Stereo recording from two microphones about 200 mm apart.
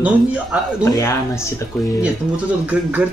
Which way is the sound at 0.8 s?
15° left (ahead or behind).